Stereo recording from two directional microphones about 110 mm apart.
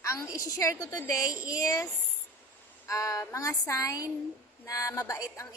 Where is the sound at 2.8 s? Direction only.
30° left (ahead or behind).